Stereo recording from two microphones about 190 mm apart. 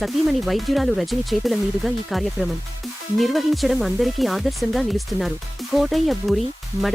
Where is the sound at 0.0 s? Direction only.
Centre (ahead or behind).